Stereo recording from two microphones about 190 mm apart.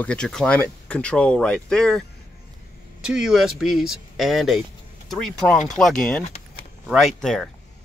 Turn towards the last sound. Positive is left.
turn(degrees=0)  # may be behind; listen again after turning